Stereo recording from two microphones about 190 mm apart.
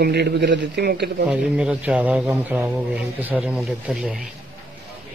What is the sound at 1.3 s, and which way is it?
A man's voice, 5° right (ahead or behind).